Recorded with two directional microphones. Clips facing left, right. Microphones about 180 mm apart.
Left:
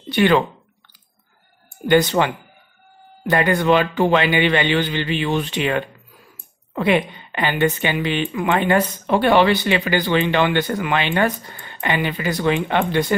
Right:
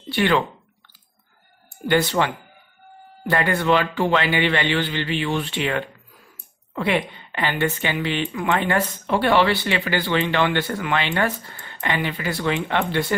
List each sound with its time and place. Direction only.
0.1 s speech: 15° left (ahead or behind)
1.9 s speech: 20° left (ahead or behind)